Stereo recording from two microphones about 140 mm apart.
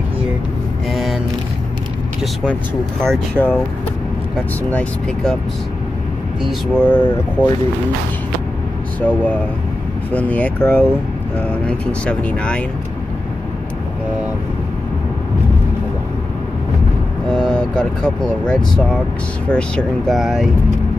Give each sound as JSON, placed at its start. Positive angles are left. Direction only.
{"t": 0.9, "sound": "vehicle", "side_deg": 0}
{"t": 3.0, "sound": "speech", "side_deg": 5}
{"t": 4.6, "sound": "speech", "side_deg": 5}
{"t": 6.4, "sound": "speech", "side_deg": 5}
{"t": 9.0, "sound": "speech", "side_deg": 10}
{"t": 17.3, "sound": "speech", "side_deg": 5}